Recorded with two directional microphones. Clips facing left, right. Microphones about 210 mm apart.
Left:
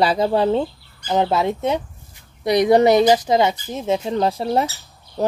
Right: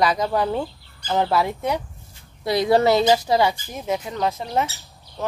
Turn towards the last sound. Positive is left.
turn(degrees=35)  # may be behind; listen again after turning